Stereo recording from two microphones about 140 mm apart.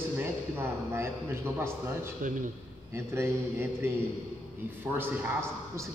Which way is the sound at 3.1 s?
15° right (ahead or behind).